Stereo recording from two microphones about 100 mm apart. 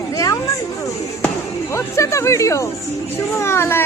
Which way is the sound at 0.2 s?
35° left (ahead or behind).